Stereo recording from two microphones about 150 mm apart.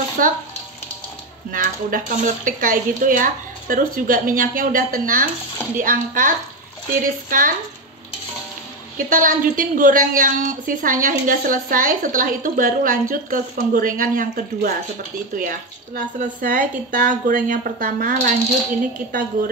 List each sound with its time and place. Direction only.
0.2 s a woman's voice: 65° right (ahead or behind)
1.5 s a woman's voice: 65° right (ahead or behind)
8.9 s a woman's voice: 65° right (ahead or behind)